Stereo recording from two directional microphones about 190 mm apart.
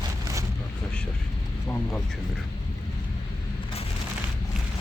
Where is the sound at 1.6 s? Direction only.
10° left (ahead or behind).